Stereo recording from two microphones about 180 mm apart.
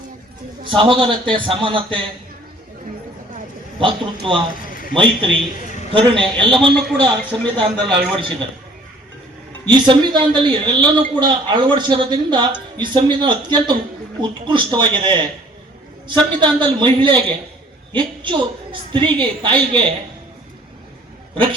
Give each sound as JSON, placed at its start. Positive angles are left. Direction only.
{"t": 0.6, "sound": "a woman's voice", "side_deg": -30}
{"t": 3.8, "sound": "a woman's voice", "side_deg": -30}
{"t": 4.6, "sound": "a sound", "side_deg": 50}
{"t": 4.9, "sound": "a woman's voice", "side_deg": -30}
{"t": 6.3, "sound": "a man's voice", "side_deg": 5}
{"t": 7.0, "sound": "a woman's voice", "side_deg": -30}
{"t": 9.6, "sound": "a woman's voice", "side_deg": -25}